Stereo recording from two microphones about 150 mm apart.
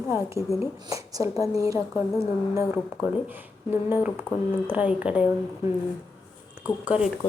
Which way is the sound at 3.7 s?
15° right (ahead or behind).